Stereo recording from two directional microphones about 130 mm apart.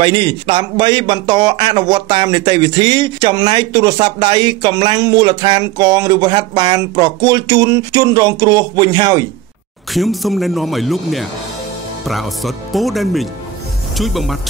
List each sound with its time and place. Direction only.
0.0 s a man's voice: 40° right (ahead or behind)
9.9 s speech: centre (ahead or behind)